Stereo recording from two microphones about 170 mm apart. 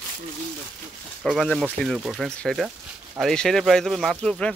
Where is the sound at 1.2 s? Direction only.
Centre (ahead or behind).